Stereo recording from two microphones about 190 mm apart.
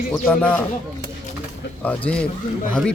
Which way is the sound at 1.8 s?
10° left (ahead or behind).